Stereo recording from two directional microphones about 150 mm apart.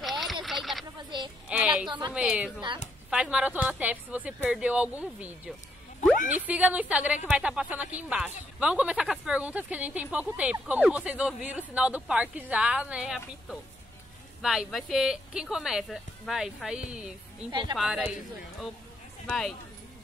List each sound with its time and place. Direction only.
0.0 s a sound: centre (ahead or behind)
1.9 s speech: 30° right (ahead or behind)
2.1 s speech: 5° right (ahead or behind)
6.4 s speech: 10° right (ahead or behind)
17.5 s speech: 30° right (ahead or behind)
17.7 s speech: 5° right (ahead or behind)
19.2 s speech: 5° left (ahead or behind)